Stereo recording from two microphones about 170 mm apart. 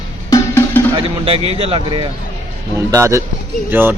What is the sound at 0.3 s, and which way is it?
Music, 15° left (ahead or behind).